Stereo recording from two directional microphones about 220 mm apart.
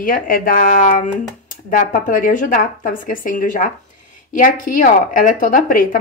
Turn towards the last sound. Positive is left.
turn(degrees=40)  # may be behind; listen again after turning